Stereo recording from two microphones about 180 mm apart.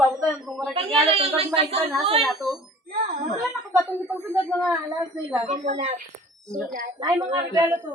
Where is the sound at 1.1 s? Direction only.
30° right (ahead or behind).